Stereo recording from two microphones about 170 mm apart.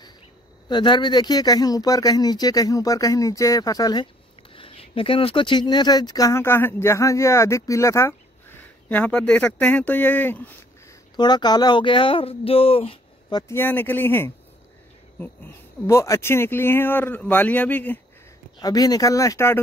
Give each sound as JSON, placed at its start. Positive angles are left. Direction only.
{"t": 0.7, "sound": "speech", "side_deg": 25}
{"t": 11.1, "sound": "speech", "side_deg": 25}
{"t": 13.6, "sound": "speech", "side_deg": 10}
{"t": 15.9, "sound": "speech", "side_deg": 20}
{"t": 18.6, "sound": "speech", "side_deg": 20}